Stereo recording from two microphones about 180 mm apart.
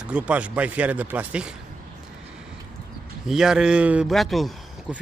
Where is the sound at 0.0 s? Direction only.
5° right (ahead or behind).